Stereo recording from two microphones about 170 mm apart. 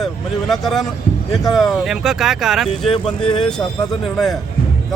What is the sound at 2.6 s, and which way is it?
Speech, 35° left (ahead or behind).